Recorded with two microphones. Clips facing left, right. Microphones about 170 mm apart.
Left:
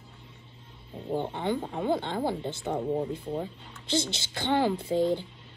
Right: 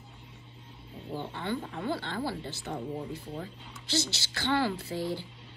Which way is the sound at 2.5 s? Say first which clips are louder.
Left 6 dB; 60° left (ahead or behind).